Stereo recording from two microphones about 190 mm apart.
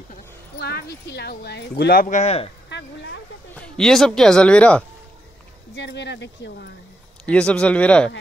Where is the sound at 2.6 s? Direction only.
65° left (ahead or behind).